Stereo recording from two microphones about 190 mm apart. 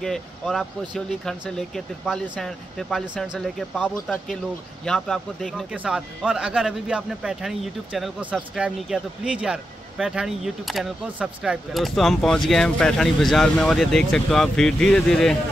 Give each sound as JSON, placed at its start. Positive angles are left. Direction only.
{"t": 0.0, "sound": "speech", "side_deg": 0}